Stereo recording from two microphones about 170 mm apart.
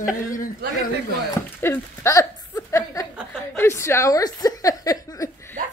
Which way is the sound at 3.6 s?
15° left (ahead or behind).